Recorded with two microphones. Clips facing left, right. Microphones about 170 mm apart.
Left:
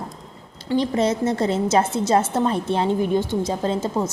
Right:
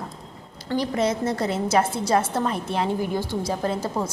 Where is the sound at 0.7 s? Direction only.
25° left (ahead or behind).